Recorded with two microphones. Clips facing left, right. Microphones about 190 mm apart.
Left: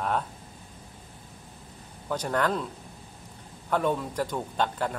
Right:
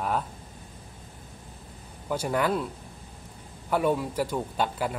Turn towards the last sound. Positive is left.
turn(degrees=-10)  # may be behind; listen again after turning